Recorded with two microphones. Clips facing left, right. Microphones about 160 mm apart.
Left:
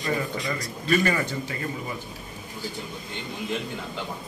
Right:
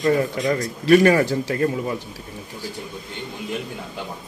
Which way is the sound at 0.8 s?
65° right (ahead or behind).